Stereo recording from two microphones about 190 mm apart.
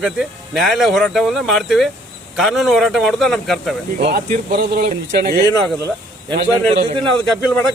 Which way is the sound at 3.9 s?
45° right (ahead or behind).